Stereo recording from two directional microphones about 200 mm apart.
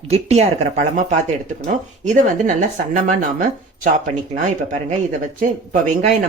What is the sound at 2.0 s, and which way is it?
Speech, 40° right (ahead or behind).